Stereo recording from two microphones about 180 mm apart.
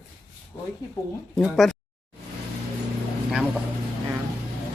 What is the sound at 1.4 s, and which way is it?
Speech, centre (ahead or behind).